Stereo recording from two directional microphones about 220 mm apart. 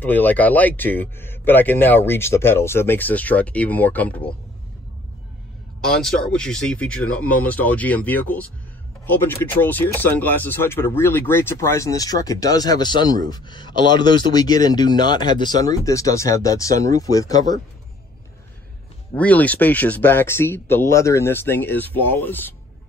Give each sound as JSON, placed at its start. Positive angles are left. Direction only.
{"t": 0.0, "sound": "speech", "side_deg": 10}
{"t": 5.8, "sound": "speech", "side_deg": 0}
{"t": 19.1, "sound": "speech", "side_deg": 5}